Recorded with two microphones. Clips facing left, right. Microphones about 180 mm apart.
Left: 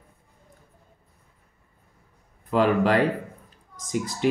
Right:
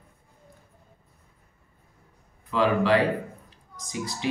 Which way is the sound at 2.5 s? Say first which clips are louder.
Left 1 dB; 45° left (ahead or behind).